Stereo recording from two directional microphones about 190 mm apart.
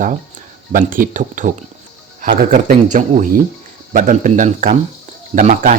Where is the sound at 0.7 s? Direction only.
45° right (ahead or behind).